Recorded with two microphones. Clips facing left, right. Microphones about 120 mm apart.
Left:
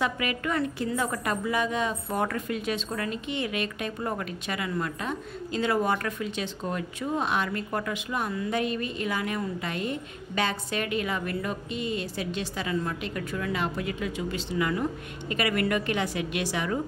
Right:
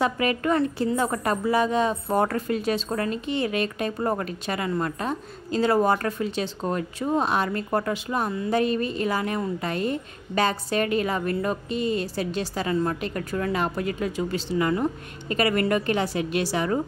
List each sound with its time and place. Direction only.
0.0 s a woman's voice: 35° right (ahead or behind)